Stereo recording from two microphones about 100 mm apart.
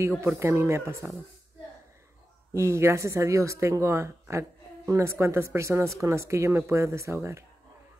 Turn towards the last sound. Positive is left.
turn(degrees=-30)  # may be behind; listen again after turning